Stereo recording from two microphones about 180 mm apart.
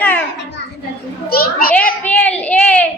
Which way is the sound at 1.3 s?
55° left (ahead or behind).